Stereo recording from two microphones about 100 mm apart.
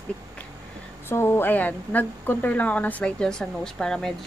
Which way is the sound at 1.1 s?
25° left (ahead or behind).